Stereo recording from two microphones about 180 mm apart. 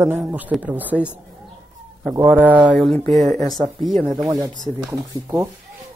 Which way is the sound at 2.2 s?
10° right (ahead or behind).